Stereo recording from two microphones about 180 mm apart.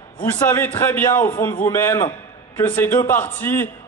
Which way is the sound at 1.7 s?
15° left (ahead or behind).